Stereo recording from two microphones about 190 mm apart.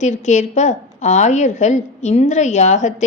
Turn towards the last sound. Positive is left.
turn(degrees=40)  # may be behind; listen again after turning